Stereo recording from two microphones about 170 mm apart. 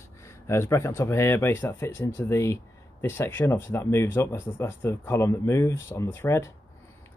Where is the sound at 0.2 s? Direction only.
15° left (ahead or behind).